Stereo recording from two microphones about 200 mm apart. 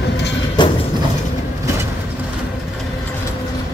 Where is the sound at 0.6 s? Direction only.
20° left (ahead or behind).